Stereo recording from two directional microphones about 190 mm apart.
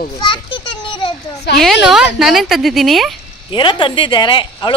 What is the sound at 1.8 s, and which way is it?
A woman's voice, centre (ahead or behind).